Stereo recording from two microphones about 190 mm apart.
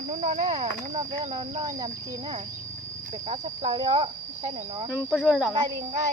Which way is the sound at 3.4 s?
25° right (ahead or behind).